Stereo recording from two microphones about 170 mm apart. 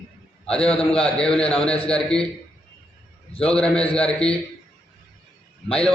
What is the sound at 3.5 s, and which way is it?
Speech, 5° left (ahead or behind).